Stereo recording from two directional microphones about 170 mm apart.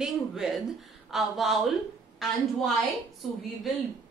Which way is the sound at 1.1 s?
Centre (ahead or behind).